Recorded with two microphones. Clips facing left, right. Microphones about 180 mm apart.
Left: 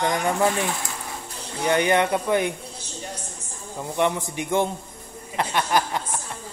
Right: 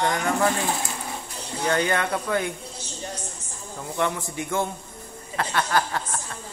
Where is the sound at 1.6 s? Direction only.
15° left (ahead or behind).